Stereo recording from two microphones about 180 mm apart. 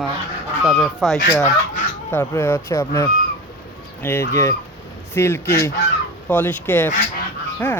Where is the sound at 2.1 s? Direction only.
15° left (ahead or behind).